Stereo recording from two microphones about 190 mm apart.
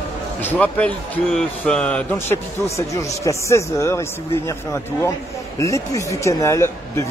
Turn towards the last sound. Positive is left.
turn(degrees=15)  # may be behind; listen again after turning